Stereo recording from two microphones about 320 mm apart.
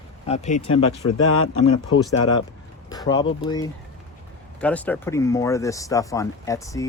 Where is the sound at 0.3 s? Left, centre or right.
Left.